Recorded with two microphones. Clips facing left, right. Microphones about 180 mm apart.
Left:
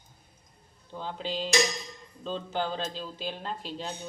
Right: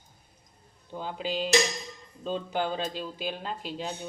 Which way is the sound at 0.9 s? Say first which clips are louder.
Right 2 dB; 10° right (ahead or behind).